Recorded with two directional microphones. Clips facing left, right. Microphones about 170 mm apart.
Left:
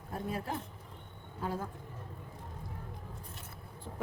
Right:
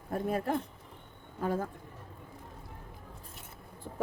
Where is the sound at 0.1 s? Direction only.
55° right (ahead or behind).